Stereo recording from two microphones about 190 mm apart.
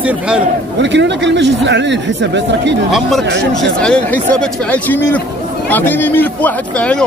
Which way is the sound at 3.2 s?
65° right (ahead or behind).